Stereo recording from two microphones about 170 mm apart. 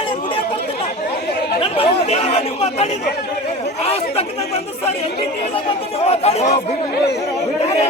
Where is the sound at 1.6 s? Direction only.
35° left (ahead or behind).